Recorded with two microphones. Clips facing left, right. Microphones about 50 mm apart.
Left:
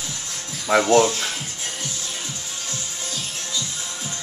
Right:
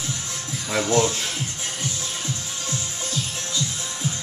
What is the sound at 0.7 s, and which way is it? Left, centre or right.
Speech, left.